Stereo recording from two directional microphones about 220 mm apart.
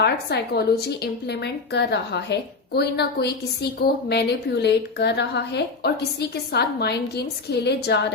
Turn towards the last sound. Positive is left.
turn(degrees=50)  # may be behind; listen again after turning